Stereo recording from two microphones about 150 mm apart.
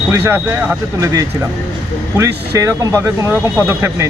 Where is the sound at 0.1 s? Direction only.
15° right (ahead or behind).